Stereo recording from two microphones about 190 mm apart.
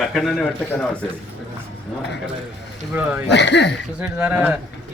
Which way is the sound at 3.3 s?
65° left (ahead or behind).